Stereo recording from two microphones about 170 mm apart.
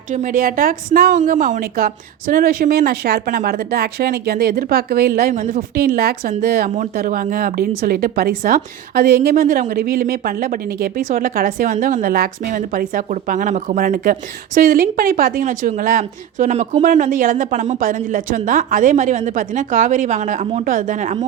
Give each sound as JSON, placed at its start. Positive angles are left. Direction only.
{"t": 0.1, "sound": "a woman's voice", "side_deg": -50}
{"t": 5.3, "sound": "speech", "side_deg": -45}
{"t": 5.7, "sound": "speech", "side_deg": -60}